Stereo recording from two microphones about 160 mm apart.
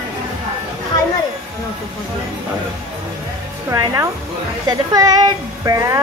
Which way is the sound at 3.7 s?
20° right (ahead or behind).